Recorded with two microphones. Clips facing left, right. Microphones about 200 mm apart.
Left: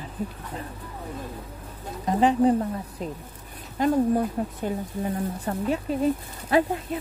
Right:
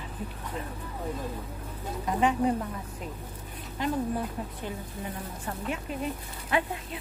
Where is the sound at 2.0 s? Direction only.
35° left (ahead or behind).